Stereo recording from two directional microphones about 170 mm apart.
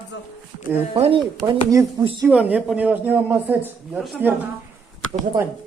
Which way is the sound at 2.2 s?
10° right (ahead or behind).